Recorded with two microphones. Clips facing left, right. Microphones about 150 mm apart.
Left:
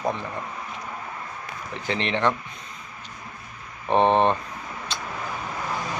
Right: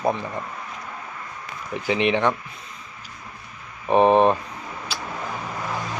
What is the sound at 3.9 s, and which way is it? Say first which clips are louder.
Speech: right 3 dB; 5° right (ahead or behind).